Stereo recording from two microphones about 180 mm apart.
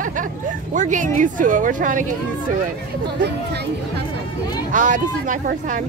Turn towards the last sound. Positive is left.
turn(degrees=-45)  # may be behind; listen again after turning